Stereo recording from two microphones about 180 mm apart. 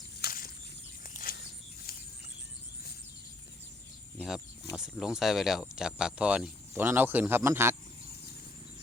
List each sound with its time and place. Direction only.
0.2 s bird flight: 55° left (ahead or behind)
1.0 s a sound: 50° left (ahead or behind)
4.8 s speech: 5° right (ahead or behind)